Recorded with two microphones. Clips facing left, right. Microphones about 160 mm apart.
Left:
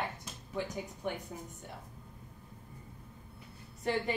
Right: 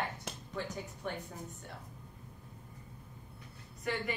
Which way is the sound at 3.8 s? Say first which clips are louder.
Left 4 dB; 30° left (ahead or behind).